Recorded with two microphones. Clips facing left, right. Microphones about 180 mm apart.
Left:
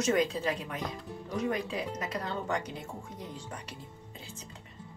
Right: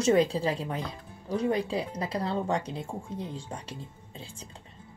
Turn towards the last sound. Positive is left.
turn(degrees=-30)  # may be behind; listen again after turning